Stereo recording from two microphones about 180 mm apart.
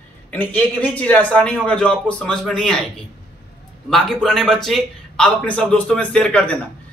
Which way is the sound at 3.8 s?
Centre (ahead or behind).